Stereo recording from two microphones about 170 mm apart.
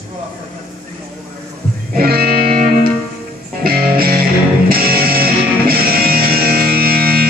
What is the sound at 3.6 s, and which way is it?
Music, 60° right (ahead or behind).